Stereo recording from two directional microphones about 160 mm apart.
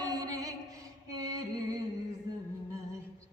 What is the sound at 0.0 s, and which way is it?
Music, 25° right (ahead or behind).